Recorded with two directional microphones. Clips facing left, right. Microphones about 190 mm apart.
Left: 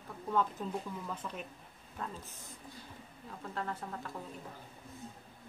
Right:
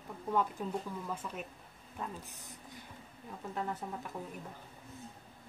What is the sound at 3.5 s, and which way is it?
Speech, 15° right (ahead or behind).